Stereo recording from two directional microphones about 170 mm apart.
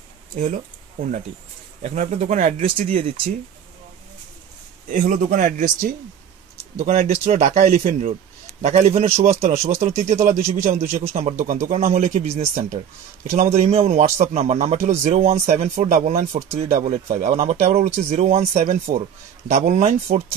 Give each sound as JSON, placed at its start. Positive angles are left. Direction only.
{"t": 0.4, "sound": "a man's voice", "side_deg": -50}
{"t": 4.8, "sound": "a man's voice", "side_deg": -50}
{"t": 16.3, "sound": "speech", "side_deg": -15}
{"t": 16.8, "sound": "a man's voice", "side_deg": -45}